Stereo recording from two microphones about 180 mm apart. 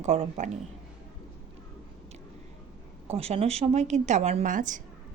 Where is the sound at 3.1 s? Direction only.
35° right (ahead or behind).